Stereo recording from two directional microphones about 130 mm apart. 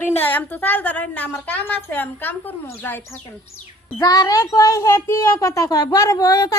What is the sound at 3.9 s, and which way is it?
A child's voice, 30° left (ahead or behind).